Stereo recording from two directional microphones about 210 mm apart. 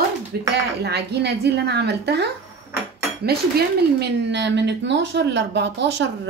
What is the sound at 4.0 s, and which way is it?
Speech, 55° right (ahead or behind).